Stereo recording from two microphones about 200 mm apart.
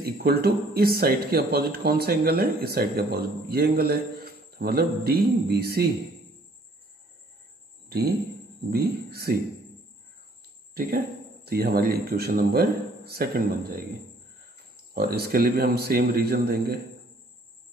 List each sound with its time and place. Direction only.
0.0 s speech: 50° right (ahead or behind)
7.9 s speech: 50° right (ahead or behind)
10.7 s cricket: 50° right (ahead or behind)
11.4 s speech: 50° right (ahead or behind)
15.0 s speech: 50° right (ahead or behind)